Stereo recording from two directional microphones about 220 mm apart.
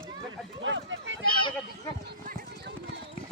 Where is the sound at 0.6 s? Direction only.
55° right (ahead or behind).